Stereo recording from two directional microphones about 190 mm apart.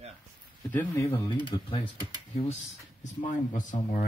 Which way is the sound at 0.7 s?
15° left (ahead or behind).